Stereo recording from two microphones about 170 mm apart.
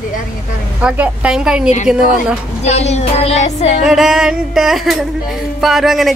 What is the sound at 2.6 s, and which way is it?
Speech, 40° left (ahead or behind).